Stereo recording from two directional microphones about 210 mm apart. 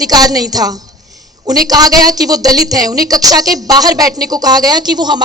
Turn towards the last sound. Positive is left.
turn(degrees=-20)  # may be behind; listen again after turning